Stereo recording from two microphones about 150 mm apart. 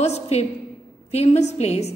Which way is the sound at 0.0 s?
45° left (ahead or behind).